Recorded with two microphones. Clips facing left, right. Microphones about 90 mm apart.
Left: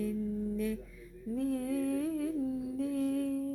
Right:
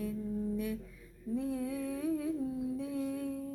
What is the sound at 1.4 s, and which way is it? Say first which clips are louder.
Humming: left 4 dB; 10° right (ahead or behind).